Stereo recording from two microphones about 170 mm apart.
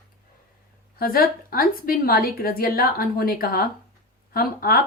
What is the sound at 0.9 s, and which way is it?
A woman's voice, 60° left (ahead or behind).